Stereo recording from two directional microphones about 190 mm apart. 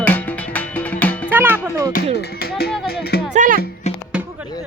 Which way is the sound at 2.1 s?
55° left (ahead or behind).